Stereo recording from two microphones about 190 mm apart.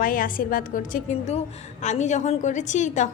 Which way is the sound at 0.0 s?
45° left (ahead or behind).